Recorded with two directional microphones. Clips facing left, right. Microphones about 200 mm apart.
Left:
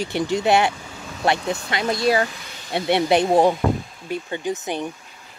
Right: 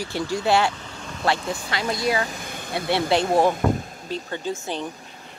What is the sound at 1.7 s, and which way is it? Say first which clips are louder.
Speech: left 4 dB; 25° left (ahead or behind).